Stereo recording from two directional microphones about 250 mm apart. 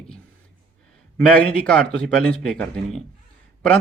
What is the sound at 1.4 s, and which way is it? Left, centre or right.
Speech, centre.